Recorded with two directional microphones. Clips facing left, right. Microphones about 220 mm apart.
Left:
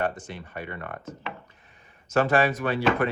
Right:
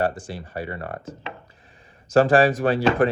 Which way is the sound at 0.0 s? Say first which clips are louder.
Right 4 dB; 35° right (ahead or behind).